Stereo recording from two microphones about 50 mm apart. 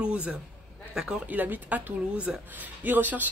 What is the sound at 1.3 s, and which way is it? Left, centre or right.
Speech, right.